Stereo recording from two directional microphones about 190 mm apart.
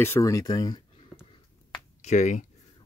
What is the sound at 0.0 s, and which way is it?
Speech, 15° left (ahead or behind).